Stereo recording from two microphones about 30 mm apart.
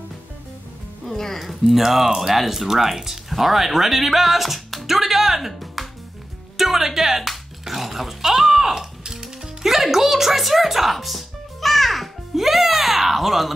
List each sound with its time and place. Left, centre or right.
1.0 s music: centre
1.4 s speech: centre
5.5 s music: centre